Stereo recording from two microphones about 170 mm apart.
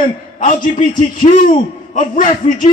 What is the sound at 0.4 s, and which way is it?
A man's voice, 50° left (ahead or behind).